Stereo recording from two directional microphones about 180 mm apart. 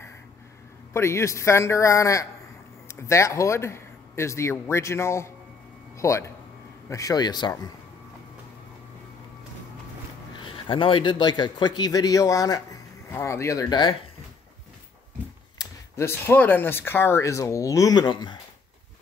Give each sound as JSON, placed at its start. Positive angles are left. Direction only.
{"t": 0.9, "sound": "a man's voice", "side_deg": 15}
{"t": 10.4, "sound": "a man's voice", "side_deg": 30}
{"t": 15.6, "sound": "speech", "side_deg": 15}